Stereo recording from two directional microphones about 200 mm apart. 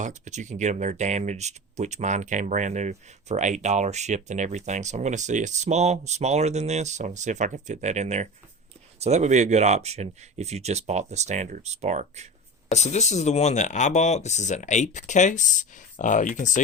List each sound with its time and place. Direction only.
0.0 s speech: 35° right (ahead or behind)
12.7 s speech: 35° left (ahead or behind)